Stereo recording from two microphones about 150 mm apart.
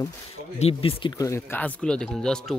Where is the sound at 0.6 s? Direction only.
40° left (ahead or behind).